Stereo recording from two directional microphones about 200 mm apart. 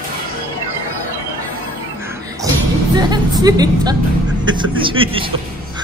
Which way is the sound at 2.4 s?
15° right (ahead or behind).